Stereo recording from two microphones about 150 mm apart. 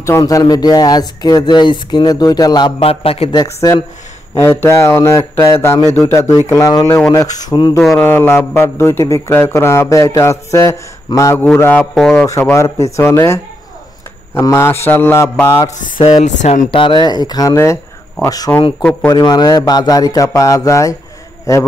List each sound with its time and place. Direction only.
0.0 s speech: 20° left (ahead or behind)
2.8 s a man's voice: 40° left (ahead or behind)
3.3 s a man's voice: 20° left (ahead or behind)
8.0 s a man's voice: 15° left (ahead or behind)
11.8 s speech: centre (ahead or behind)
12.5 s a man's voice: 20° left (ahead or behind)
16.0 s speech: 45° left (ahead or behind)
16.7 s speech: 35° left (ahead or behind)
18.8 s a man's voice: 10° left (ahead or behind)
19.0 s speech: 25° left (ahead or behind)